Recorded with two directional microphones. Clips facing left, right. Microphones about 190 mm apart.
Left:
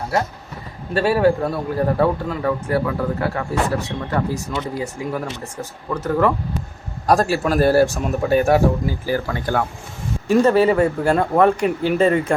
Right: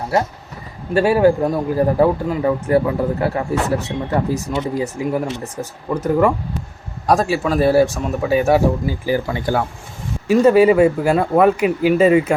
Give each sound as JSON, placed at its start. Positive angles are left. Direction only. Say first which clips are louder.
{"t": 0.9, "sound": "a man's voice", "louder": "right 3 dB", "side_deg": -10}
{"t": 7.1, "sound": "a man's voice", "louder": "right 1 dB", "side_deg": 0}